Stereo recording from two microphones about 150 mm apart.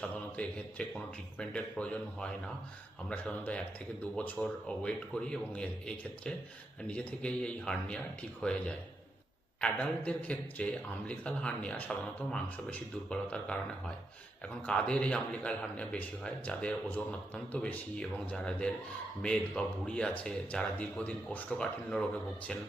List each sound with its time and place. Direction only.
0.0 s a man's voice: 5° left (ahead or behind)